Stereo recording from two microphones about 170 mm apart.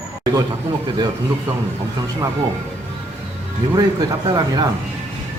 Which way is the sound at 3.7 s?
25° right (ahead or behind).